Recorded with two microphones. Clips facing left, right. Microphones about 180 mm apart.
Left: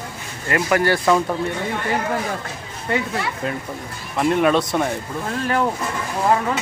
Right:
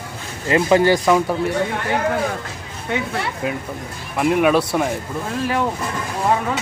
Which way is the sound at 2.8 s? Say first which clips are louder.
Even; 5° right (ahead or behind).